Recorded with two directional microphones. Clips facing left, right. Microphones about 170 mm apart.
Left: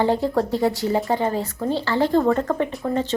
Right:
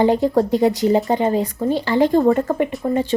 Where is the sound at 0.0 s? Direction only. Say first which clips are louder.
Right 4 dB; 15° right (ahead or behind).